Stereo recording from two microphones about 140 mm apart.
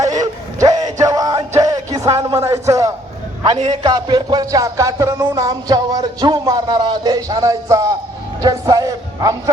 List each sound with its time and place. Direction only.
0.0 s music: 25° right (ahead or behind)
2.1 s a man's voice: 25° right (ahead or behind)
3.7 s music: 30° right (ahead or behind)
8.4 s speech: 25° right (ahead or behind)